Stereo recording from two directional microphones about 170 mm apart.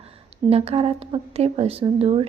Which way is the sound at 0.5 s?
35° right (ahead or behind).